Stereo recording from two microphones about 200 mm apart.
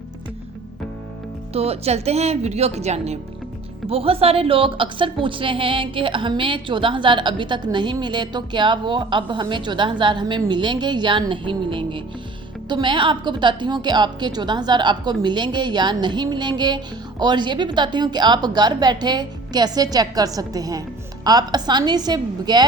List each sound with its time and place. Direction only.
1.5 s a woman's voice: 30° right (ahead or behind)